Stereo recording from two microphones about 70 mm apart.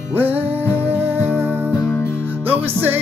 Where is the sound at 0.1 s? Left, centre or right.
Right.